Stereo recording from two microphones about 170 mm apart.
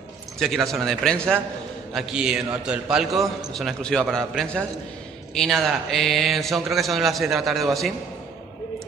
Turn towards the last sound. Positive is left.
turn(degrees=0)  # may be behind; listen again after turning